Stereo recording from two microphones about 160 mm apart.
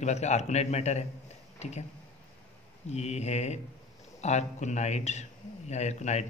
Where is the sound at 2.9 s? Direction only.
45° left (ahead or behind).